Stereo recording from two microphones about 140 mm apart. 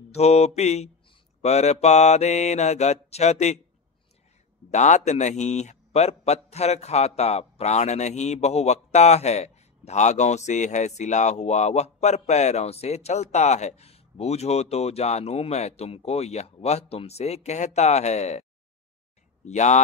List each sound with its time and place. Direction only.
0.1 s a man's voice: 50° left (ahead or behind)
4.6 s a man's voice: 60° left (ahead or behind)
19.4 s speech: 55° left (ahead or behind)